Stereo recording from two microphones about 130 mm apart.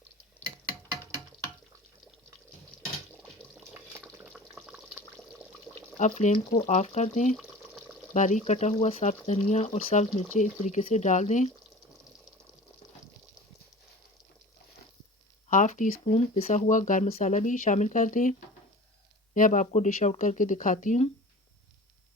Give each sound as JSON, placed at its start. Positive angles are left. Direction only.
{"t": 4.1, "sound": "water", "side_deg": -5}
{"t": 6.0, "sound": "speech", "side_deg": 65}
{"t": 7.3, "sound": "water", "side_deg": 0}
{"t": 8.1, "sound": "speech", "side_deg": 65}
{"t": 15.4, "sound": "speech", "side_deg": 80}
{"t": 16.1, "sound": "speech", "side_deg": 60}
{"t": 17.1, "sound": "speech", "side_deg": 65}